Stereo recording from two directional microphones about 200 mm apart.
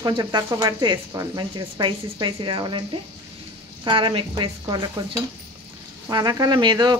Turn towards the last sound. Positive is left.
turn(degrees=-20)  # may be behind; listen again after turning